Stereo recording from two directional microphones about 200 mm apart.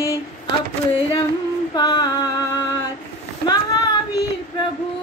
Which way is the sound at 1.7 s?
20° left (ahead or behind).